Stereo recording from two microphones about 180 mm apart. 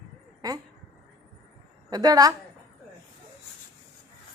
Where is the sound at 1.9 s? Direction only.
20° right (ahead or behind).